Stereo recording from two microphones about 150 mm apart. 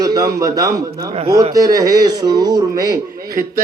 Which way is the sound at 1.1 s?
35° right (ahead or behind).